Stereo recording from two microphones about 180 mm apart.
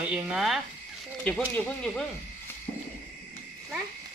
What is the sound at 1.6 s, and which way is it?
Speech, 5° left (ahead or behind).